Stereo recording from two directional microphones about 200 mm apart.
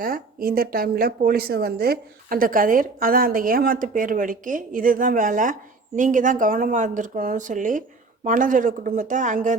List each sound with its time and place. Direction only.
0.0 s speech: 45° right (ahead or behind)